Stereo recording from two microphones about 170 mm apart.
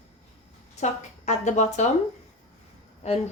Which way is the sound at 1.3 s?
45° left (ahead or behind).